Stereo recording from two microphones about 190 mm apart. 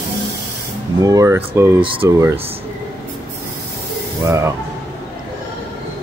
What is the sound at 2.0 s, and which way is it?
Speech, 15° right (ahead or behind).